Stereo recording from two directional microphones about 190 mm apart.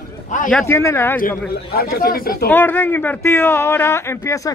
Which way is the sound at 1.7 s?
55° left (ahead or behind).